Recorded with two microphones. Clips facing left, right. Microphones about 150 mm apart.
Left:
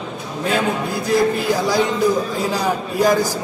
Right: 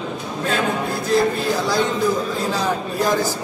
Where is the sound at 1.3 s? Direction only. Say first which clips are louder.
Left 2 dB; 10° left (ahead or behind).